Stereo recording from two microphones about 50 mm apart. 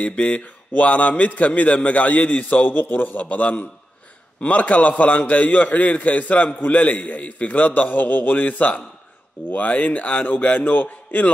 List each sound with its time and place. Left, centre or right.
0.0 s a man's voice: left